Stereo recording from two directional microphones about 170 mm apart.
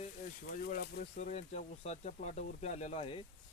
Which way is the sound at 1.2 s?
45° left (ahead or behind).